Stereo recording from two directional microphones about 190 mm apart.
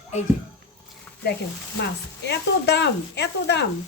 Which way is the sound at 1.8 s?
60° left (ahead or behind).